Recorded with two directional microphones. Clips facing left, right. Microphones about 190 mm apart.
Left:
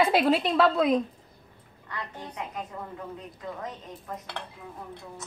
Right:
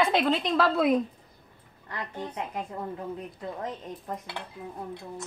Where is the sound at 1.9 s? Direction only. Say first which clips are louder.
Right 3 dB; 30° right (ahead or behind).